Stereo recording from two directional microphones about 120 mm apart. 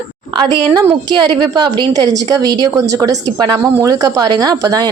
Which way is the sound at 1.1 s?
35° right (ahead or behind).